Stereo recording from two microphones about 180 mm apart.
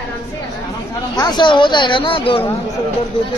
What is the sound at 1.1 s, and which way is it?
Speech, 25° left (ahead or behind).